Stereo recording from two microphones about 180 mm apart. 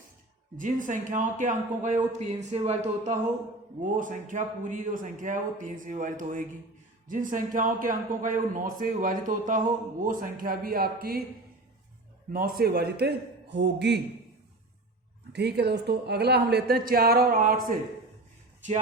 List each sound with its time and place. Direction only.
0.5 s a man's voice: 45° right (ahead or behind)
12.3 s a man's voice: 55° right (ahead or behind); by 14.0 s 70° right (ahead or behind)
15.3 s a man's voice: 65° right (ahead or behind); by 17.7 s 50° right (ahead or behind)